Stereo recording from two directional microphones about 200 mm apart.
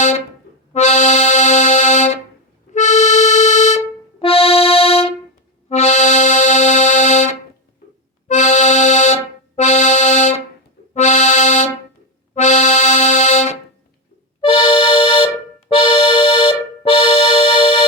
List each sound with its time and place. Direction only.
0.7 s accordion: 35° left (ahead or behind)
2.7 s music: 35° left (ahead or behind)
5.6 s accordion: 35° left (ahead or behind)
15.7 s music: 25° left (ahead or behind)